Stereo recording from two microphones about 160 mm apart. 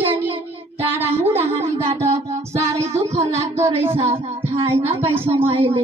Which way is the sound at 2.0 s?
20° right (ahead or behind).